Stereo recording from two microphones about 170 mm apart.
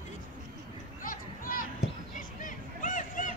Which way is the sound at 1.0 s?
55° left (ahead or behind).